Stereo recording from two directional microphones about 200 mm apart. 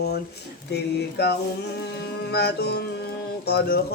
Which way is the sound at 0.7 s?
55° left (ahead or behind).